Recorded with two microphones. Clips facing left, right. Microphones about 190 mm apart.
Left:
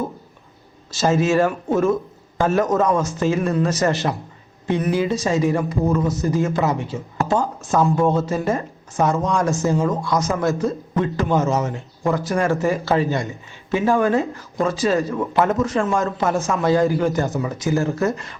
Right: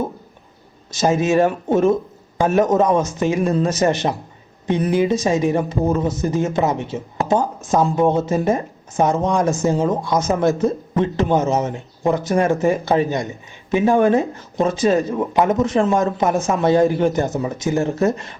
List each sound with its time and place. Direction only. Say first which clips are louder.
0.9 s a man's voice: right 1 dB; 15° right (ahead or behind)